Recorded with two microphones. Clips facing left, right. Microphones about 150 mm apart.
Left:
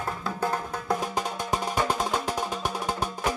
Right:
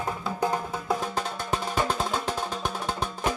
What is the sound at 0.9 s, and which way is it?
Music, 15° left (ahead or behind).